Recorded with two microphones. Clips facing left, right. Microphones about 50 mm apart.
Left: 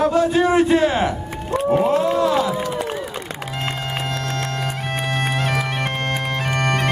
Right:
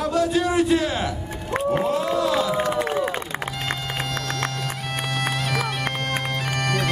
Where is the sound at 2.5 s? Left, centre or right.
Right.